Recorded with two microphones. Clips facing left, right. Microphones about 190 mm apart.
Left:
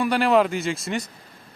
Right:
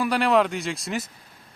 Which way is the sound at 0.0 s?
Centre (ahead or behind).